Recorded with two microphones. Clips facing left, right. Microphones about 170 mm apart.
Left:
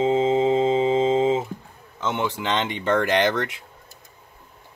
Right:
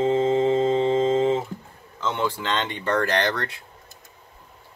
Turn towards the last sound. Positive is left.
turn(degrees=20)  # may be behind; listen again after turning